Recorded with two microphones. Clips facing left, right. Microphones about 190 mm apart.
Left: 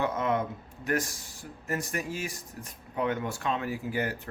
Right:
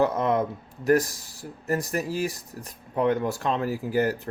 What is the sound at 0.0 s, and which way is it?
Speech, 40° right (ahead or behind).